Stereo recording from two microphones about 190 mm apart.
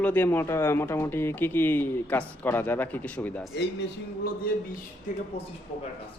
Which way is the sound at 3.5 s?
65° left (ahead or behind).